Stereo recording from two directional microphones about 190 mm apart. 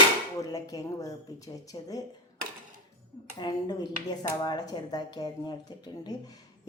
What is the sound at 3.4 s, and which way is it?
Speech, 20° left (ahead or behind).